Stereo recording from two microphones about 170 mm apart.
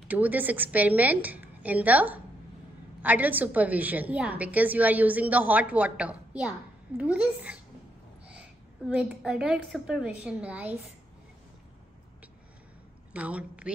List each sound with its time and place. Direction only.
0.1 s a woman's voice: 10° right (ahead or behind)
13.1 s a woman's voice: 10° right (ahead or behind)